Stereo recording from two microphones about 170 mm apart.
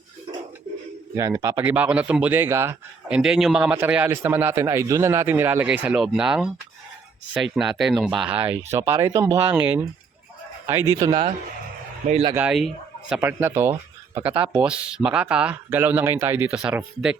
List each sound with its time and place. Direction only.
1.1 s a man's voice: 20° right (ahead or behind)
3.2 s a man's voice: centre (ahead or behind)
10.9 s speech: 20° right (ahead or behind)
12.3 s a man's voice: 10° right (ahead or behind)